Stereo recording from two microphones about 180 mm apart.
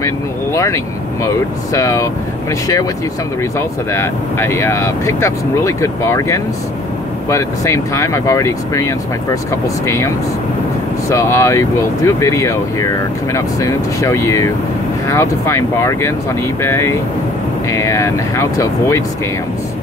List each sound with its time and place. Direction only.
1.2 s speech: 15° left (ahead or behind)
3.5 s speech: 15° left (ahead or behind)